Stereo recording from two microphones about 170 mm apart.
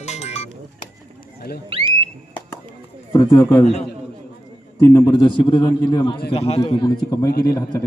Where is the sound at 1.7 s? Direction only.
30° right (ahead or behind).